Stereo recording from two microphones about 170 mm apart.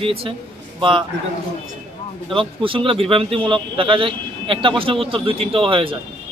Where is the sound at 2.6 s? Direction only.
30° right (ahead or behind).